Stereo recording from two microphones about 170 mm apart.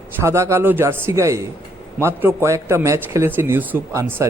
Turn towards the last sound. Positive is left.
turn(degrees=-15)  # may be behind; listen again after turning